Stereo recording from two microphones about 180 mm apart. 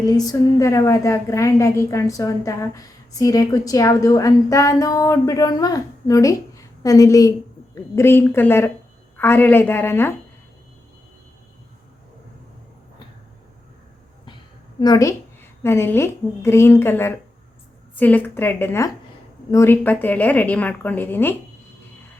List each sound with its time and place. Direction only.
0.1 s a woman's voice: 20° left (ahead or behind)
14.8 s a woman's voice: 20° left (ahead or behind)